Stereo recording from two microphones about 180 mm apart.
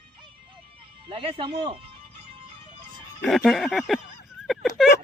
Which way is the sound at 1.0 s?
30° right (ahead or behind).